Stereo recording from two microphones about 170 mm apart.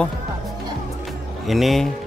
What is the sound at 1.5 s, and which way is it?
Speech, centre (ahead or behind).